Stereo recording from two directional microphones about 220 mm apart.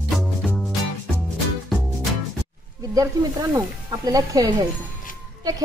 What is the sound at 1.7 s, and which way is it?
Music, centre (ahead or behind).